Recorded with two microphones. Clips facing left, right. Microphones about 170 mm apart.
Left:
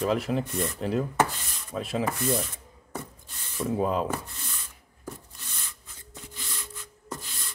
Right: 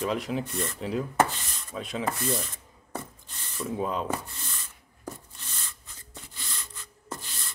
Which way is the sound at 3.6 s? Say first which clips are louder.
Left 4 dB; 5° left (ahead or behind).